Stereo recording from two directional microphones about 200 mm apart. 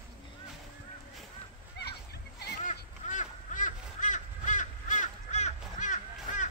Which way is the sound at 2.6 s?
40° left (ahead or behind).